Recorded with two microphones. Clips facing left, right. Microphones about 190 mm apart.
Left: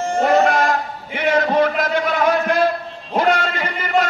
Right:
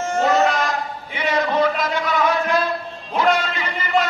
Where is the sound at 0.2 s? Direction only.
55° left (ahead or behind).